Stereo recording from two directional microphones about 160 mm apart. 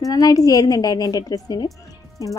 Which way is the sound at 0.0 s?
20° left (ahead or behind).